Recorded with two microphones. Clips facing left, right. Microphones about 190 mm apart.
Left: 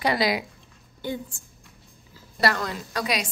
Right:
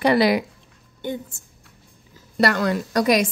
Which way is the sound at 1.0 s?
20° right (ahead or behind).